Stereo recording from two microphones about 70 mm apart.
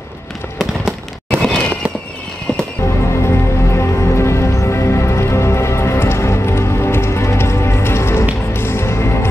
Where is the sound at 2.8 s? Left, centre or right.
Left.